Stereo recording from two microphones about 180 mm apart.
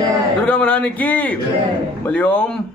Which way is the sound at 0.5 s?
10° left (ahead or behind).